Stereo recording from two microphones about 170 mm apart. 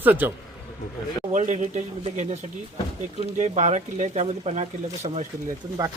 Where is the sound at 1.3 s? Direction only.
45° right (ahead or behind).